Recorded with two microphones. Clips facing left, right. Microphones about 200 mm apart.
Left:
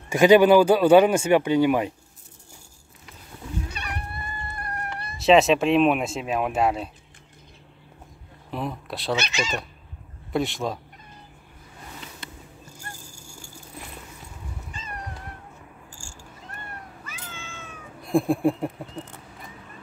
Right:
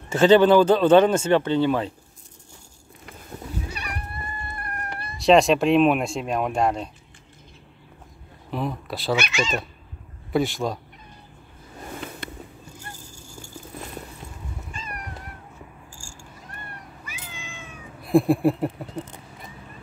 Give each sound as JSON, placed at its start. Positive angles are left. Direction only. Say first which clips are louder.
{"t": 0.1, "sound": "speech", "louder": "even", "side_deg": 10}
{"t": 5.2, "sound": "speech", "louder": "right 1 dB", "side_deg": 0}
{"t": 8.5, "sound": "speech", "louder": "right 2 dB", "side_deg": 0}
{"t": 10.3, "sound": "speech", "louder": "right 2 dB", "side_deg": 0}
{"t": 12.2, "sound": "cat", "louder": "right 6 dB", "side_deg": -60}
{"t": 14.7, "sound": "cat", "louder": "right 2 dB", "side_deg": 20}
{"t": 17.0, "sound": "cat", "louder": "even", "side_deg": -15}
{"t": 18.0, "sound": "speech", "louder": "right 3 dB", "side_deg": 0}